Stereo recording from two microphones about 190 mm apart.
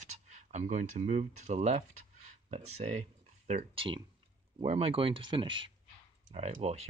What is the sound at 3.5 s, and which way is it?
Speech, 30° right (ahead or behind).